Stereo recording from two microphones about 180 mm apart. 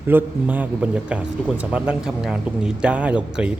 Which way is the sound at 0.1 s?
10° right (ahead or behind).